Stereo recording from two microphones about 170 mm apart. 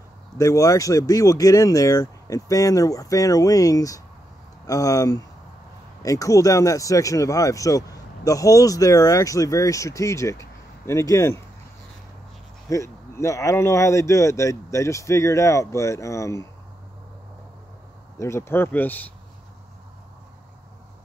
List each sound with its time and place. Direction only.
0.4 s speech: 20° left (ahead or behind)
12.6 s speech: 20° left (ahead or behind)
18.2 s speech: 15° left (ahead or behind)